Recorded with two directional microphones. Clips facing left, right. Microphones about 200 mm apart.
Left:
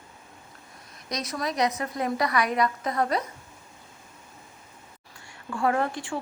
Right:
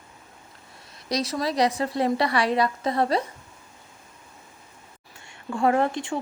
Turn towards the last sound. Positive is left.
turn(degrees=-20)  # may be behind; listen again after turning